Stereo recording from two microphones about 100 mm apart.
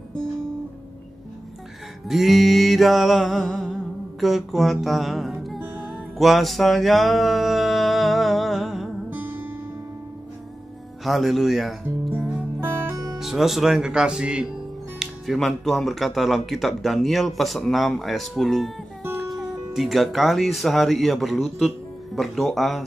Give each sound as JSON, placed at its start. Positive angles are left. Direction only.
{"t": 2.0, "sound": "music", "side_deg": 0}
{"t": 9.1, "sound": "music", "side_deg": -15}
{"t": 11.1, "sound": "speech", "side_deg": 0}
{"t": 12.4, "sound": "music", "side_deg": -25}
{"t": 13.2, "sound": "speech", "side_deg": 0}